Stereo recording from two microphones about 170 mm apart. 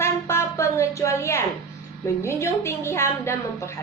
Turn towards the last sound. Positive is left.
turn(degrees=15)  # may be behind; listen again after turning